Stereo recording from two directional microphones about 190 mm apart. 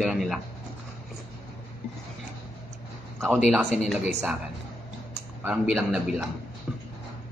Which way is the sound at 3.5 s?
Centre (ahead or behind).